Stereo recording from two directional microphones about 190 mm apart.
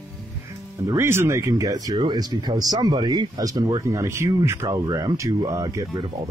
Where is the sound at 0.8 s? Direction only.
15° right (ahead or behind).